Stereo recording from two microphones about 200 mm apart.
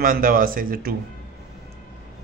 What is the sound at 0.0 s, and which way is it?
Speech, 45° right (ahead or behind).